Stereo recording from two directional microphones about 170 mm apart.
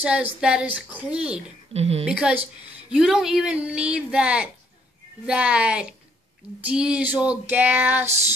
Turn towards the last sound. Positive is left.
turn(degrees=-10)  # may be behind; listen again after turning